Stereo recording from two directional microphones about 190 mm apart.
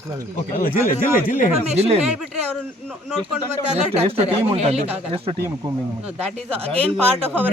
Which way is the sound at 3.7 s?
35° right (ahead or behind).